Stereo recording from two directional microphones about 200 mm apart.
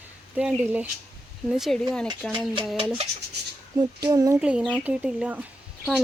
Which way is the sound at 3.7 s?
20° right (ahead or behind).